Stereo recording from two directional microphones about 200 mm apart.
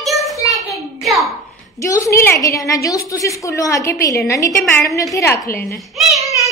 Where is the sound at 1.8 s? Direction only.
15° left (ahead or behind).